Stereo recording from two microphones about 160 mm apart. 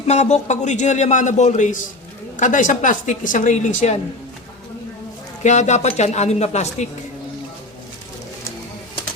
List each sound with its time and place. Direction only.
0.1 s a man's voice: 45° left (ahead or behind)
5.4 s a man's voice: 45° left (ahead or behind)